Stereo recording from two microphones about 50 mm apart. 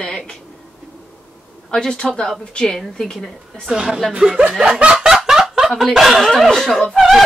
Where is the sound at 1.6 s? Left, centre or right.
Centre.